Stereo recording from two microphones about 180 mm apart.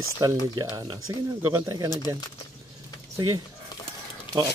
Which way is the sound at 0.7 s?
25° right (ahead or behind).